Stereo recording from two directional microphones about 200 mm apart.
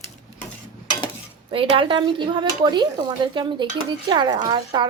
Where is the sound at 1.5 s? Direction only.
25° right (ahead or behind).